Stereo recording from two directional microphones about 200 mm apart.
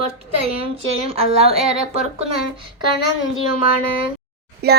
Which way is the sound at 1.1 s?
30° right (ahead or behind).